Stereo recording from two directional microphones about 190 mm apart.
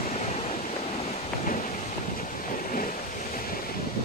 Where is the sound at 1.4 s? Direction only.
45° left (ahead or behind).